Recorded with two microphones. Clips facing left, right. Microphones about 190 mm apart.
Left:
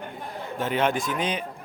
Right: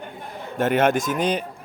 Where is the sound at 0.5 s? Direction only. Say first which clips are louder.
Right 6 dB; 50° right (ahead or behind).